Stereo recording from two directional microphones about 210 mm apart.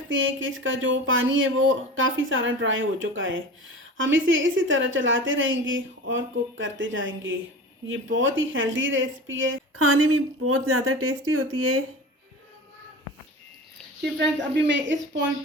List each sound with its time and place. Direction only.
0.1 s speech: 65° right (ahead or behind)
14.0 s speech: 55° right (ahead or behind)